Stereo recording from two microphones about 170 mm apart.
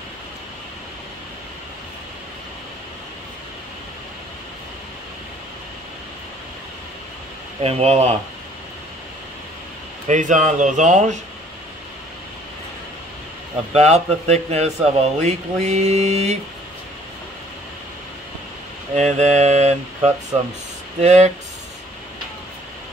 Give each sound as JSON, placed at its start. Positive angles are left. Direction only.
{"t": 7.6, "sound": "a man's voice", "side_deg": -40}
{"t": 10.0, "sound": "speech", "side_deg": -45}
{"t": 13.7, "sound": "a man's voice", "side_deg": -40}
{"t": 18.9, "sound": "a man's voice", "side_deg": -40}